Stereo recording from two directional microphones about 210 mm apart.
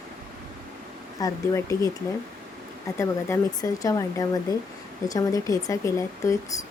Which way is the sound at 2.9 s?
15° left (ahead or behind).